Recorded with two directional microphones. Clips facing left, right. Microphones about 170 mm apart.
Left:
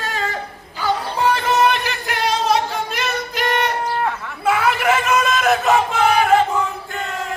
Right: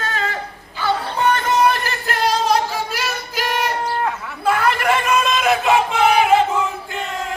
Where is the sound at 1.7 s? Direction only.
Centre (ahead or behind).